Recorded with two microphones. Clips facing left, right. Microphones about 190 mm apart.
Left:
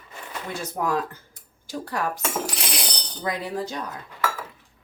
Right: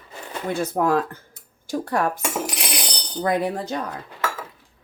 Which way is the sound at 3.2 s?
55° right (ahead or behind).